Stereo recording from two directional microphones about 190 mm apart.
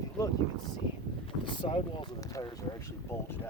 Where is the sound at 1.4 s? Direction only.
25° left (ahead or behind).